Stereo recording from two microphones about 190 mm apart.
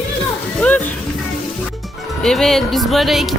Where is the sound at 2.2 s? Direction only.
Centre (ahead or behind).